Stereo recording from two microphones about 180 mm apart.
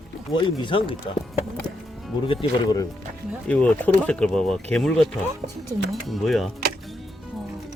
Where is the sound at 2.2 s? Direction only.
25° left (ahead or behind).